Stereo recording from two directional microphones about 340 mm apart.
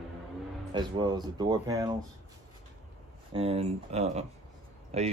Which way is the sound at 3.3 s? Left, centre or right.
Centre.